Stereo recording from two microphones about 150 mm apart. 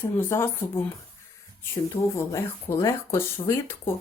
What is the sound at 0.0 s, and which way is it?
Speech, 15° left (ahead or behind).